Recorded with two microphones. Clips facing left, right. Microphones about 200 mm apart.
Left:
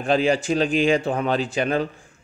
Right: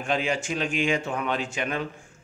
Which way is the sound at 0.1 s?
35° left (ahead or behind).